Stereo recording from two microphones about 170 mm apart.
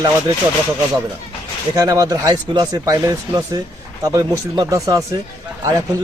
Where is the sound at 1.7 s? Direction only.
25° right (ahead or behind).